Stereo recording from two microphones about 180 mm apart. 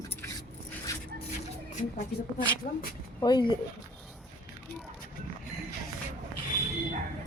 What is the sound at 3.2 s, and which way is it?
Speech, 25° left (ahead or behind).